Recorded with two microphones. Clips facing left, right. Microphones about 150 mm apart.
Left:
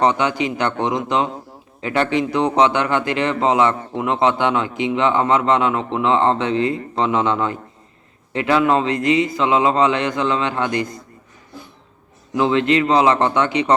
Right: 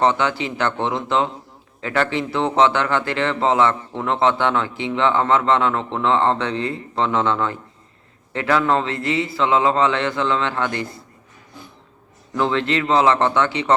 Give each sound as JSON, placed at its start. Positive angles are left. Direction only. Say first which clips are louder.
{"t": 0.0, "sound": "a man's voice", "louder": "left 1 dB", "side_deg": 15}
{"t": 12.3, "sound": "a man's voice", "louder": "left 4 dB", "side_deg": 15}